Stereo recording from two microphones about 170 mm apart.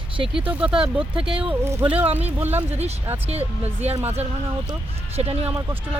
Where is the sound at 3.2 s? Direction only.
35° right (ahead or behind).